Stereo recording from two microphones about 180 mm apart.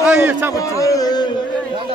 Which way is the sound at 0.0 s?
5° right (ahead or behind).